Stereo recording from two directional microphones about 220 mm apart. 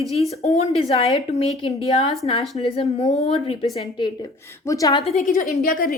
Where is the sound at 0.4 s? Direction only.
30° left (ahead or behind).